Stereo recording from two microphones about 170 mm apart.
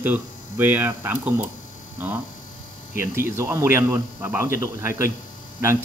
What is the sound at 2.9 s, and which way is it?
Speech, 15° right (ahead or behind).